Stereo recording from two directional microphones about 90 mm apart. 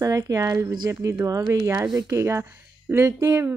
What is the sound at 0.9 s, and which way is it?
Speech, 35° right (ahead or behind).